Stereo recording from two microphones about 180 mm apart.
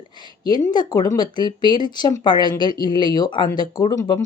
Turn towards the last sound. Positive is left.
turn(degrees=25)  # may be behind; listen again after turning